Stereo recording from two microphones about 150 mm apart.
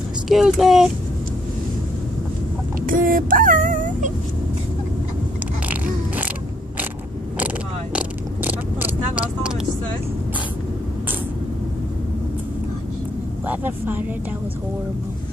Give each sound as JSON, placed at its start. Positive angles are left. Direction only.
{"t": 0.3, "sound": "speech", "side_deg": 0}
{"t": 2.9, "sound": "child singing", "side_deg": -65}
{"t": 5.7, "sound": "a sound", "side_deg": -10}
{"t": 8.5, "sound": "vehicle", "side_deg": -10}
{"t": 13.5, "sound": "speech", "side_deg": -15}